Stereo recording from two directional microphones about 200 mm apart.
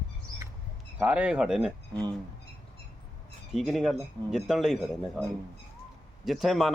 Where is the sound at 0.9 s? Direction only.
5° right (ahead or behind).